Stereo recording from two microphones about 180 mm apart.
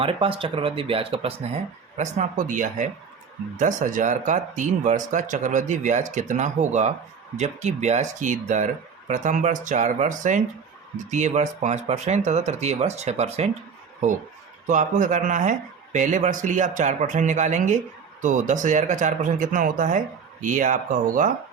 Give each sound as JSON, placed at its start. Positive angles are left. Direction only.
{"t": 0.0, "sound": "speech", "side_deg": -30}